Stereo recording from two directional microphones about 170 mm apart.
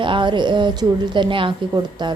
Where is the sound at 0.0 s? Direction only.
30° right (ahead or behind).